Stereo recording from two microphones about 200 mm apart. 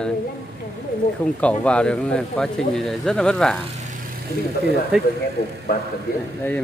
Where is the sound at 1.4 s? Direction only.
5° left (ahead or behind).